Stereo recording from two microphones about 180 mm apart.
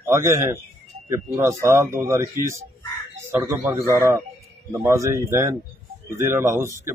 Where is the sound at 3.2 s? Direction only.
15° right (ahead or behind).